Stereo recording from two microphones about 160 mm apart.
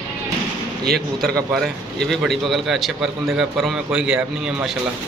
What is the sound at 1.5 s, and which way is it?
A man's voice, centre (ahead or behind).